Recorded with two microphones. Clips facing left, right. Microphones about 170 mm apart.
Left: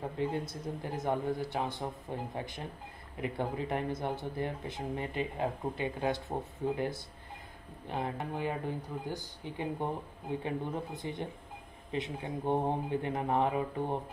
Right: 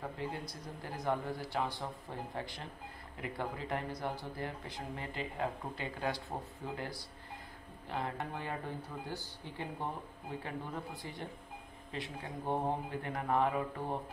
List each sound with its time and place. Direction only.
0.2 s speech: 20° left (ahead or behind)
7.9 s speech: 20° left (ahead or behind)